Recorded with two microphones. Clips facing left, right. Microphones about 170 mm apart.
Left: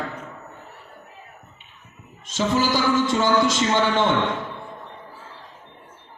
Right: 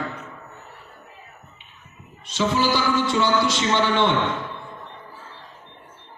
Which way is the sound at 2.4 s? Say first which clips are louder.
Even; 45° left (ahead or behind).